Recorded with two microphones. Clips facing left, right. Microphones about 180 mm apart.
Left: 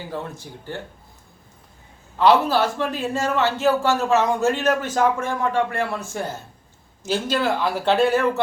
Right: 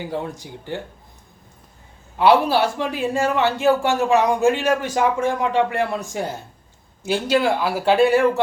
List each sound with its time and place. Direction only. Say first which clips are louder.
0.1 s a man's voice: right 3 dB; 15° right (ahead or behind)
2.1 s a man's voice: right 1 dB; 15° right (ahead or behind)